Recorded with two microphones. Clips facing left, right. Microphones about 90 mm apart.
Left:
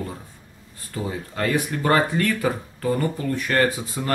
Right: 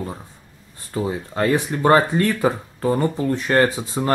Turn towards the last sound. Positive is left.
turn(degrees=-25)  # may be behind; listen again after turning